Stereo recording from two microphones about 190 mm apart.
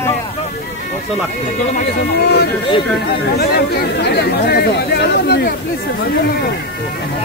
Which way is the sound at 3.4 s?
55° left (ahead or behind).